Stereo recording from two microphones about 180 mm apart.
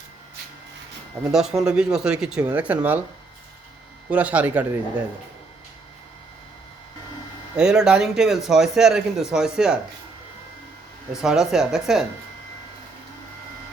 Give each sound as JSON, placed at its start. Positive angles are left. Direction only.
{"t": 1.3, "sound": "speech", "side_deg": -5}
{"t": 4.1, "sound": "speech", "side_deg": -10}
{"t": 7.5, "sound": "speech", "side_deg": -5}
{"t": 11.1, "sound": "speech", "side_deg": -5}